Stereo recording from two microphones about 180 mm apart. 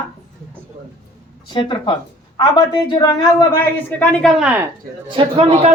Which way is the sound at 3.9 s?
5° left (ahead or behind).